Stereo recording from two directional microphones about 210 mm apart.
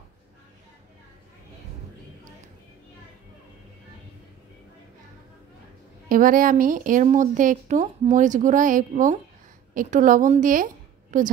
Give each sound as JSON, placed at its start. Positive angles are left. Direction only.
{"t": 6.0, "sound": "a woman's voice", "side_deg": -40}